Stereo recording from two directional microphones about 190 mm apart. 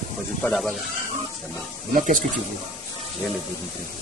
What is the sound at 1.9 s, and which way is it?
Speech, 45° right (ahead or behind).